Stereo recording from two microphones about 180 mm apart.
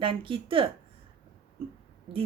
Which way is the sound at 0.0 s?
30° right (ahead or behind).